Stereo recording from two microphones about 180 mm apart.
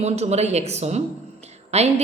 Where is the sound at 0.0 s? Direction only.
40° right (ahead or behind).